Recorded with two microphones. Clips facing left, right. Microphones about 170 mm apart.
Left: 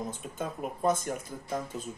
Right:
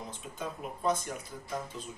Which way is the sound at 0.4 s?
50° left (ahead or behind).